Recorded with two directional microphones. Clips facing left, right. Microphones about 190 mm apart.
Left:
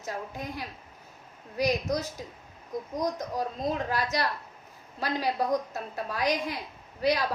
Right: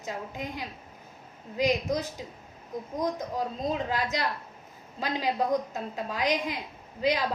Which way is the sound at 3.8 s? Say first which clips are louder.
Even; 20° right (ahead or behind).